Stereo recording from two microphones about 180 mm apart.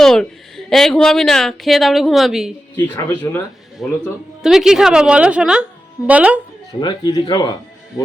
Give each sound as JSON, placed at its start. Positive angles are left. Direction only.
{"t": 0.0, "sound": "a woman's voice", "side_deg": 5}
{"t": 2.7, "sound": "speech", "side_deg": 10}
{"t": 3.8, "sound": "a woman's voice", "side_deg": 0}
{"t": 6.7, "sound": "speech", "side_deg": 25}